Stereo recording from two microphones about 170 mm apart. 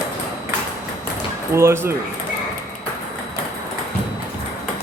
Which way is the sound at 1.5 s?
15° right (ahead or behind).